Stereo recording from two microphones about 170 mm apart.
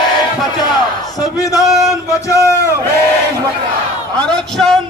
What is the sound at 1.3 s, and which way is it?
A man's voice, 20° left (ahead or behind).